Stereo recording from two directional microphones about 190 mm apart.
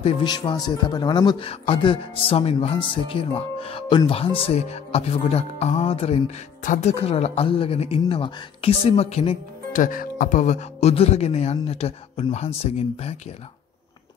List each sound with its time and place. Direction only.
0.0 s a man's voice: 20° left (ahead or behind)
9.7 s speech: 45° left (ahead or behind)